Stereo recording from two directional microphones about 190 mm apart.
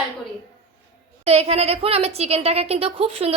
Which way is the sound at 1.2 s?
35° right (ahead or behind).